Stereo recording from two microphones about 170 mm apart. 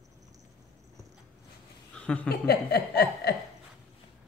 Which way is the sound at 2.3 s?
70° left (ahead or behind).